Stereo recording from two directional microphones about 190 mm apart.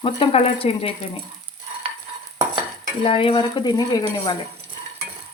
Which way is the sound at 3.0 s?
30° left (ahead or behind).